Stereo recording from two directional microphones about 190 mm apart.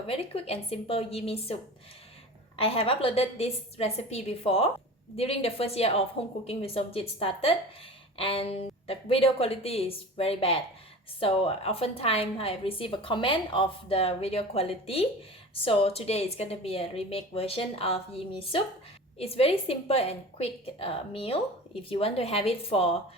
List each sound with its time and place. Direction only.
0.1 s a woman's voice: 30° left (ahead or behind)
2.6 s a woman's voice: 30° left (ahead or behind)
19.2 s a woman's voice: 30° left (ahead or behind)